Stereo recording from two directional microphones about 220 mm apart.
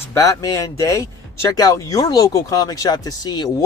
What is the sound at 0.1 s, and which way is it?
Speech, 15° left (ahead or behind).